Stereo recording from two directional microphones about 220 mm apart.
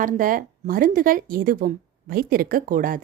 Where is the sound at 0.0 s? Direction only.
40° right (ahead or behind).